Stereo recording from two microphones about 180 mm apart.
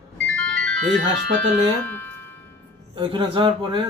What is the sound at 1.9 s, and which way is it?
Music, 10° left (ahead or behind).